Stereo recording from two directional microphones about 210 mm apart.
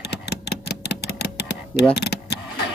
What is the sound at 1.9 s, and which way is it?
Vehicle, 50° left (ahead or behind).